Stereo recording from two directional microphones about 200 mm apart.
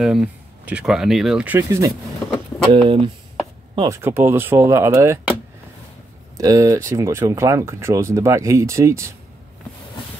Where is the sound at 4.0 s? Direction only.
10° right (ahead or behind).